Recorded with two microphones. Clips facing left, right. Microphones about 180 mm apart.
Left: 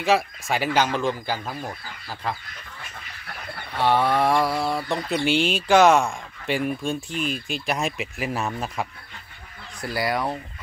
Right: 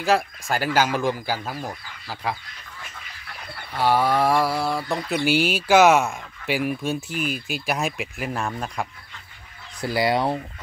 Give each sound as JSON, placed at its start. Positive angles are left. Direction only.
{"t": 0.0, "sound": "speech", "side_deg": 0}
{"t": 3.7, "sound": "mantra", "side_deg": -5}
{"t": 9.8, "sound": "speech", "side_deg": -25}